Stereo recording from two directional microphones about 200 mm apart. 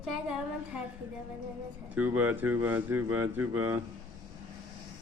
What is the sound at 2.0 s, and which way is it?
A man's voice, 10° right (ahead or behind).